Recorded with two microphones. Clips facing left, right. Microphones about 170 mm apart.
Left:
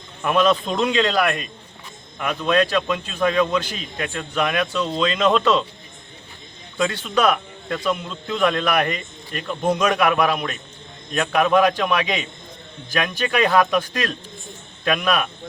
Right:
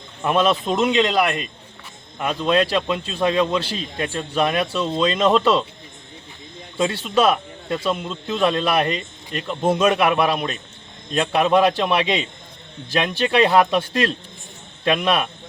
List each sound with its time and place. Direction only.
0.2 s a man's voice: 25° right (ahead or behind)
6.7 s a man's voice: 25° right (ahead or behind)